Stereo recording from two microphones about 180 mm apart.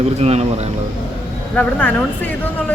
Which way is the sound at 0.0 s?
35° right (ahead or behind).